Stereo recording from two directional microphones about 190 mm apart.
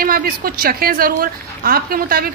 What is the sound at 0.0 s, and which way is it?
A woman's voice, 50° right (ahead or behind).